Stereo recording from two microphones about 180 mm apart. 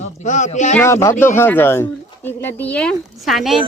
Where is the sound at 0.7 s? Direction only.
15° left (ahead or behind); by 3.5 s centre (ahead or behind).